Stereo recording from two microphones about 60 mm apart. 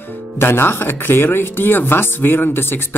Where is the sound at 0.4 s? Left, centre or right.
Left.